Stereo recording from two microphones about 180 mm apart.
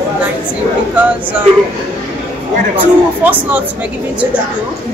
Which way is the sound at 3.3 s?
10° right (ahead or behind).